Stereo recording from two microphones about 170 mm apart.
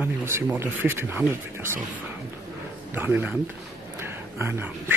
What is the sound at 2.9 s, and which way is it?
Speech, 10° right (ahead or behind).